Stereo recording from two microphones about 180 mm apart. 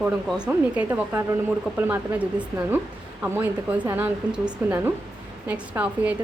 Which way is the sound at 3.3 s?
10° right (ahead or behind).